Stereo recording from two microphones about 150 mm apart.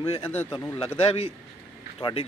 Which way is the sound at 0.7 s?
40° left (ahead or behind).